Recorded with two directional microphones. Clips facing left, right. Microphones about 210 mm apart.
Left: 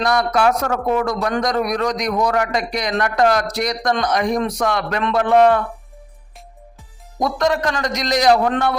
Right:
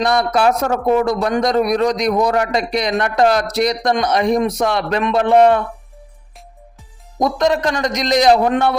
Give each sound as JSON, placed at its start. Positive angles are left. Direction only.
{"t": 0.0, "sound": "a man's voice", "side_deg": -25}
{"t": 7.2, "sound": "a man's voice", "side_deg": -20}